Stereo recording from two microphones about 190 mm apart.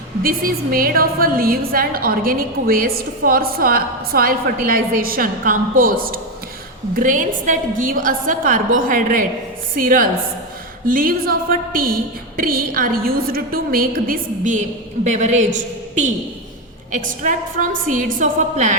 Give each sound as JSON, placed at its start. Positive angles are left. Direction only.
{"t": 0.2, "sound": "a woman's voice", "side_deg": -50}